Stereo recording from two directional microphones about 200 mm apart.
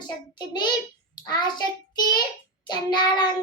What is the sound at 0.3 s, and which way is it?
Child singing, 20° left (ahead or behind).